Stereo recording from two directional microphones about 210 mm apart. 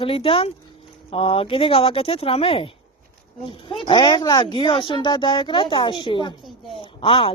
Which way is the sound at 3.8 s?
20° left (ahead or behind).